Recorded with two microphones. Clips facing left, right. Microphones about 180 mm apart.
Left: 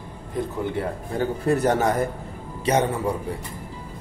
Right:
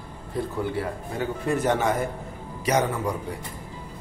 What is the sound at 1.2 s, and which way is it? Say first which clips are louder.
A man's voice: left 4 dB; 35° left (ahead or behind).